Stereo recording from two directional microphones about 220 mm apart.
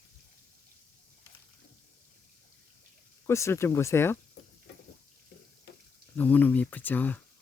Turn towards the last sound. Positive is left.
turn(degrees=5)  # may be behind; listen again after turning